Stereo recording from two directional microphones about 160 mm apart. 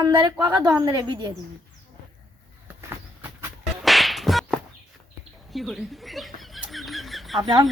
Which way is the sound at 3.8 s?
Centre (ahead or behind).